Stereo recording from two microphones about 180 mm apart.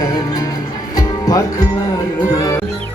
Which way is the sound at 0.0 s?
20° left (ahead or behind).